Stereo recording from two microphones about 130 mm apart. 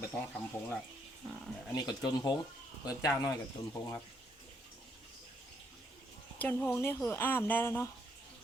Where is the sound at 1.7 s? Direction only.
30° left (ahead or behind).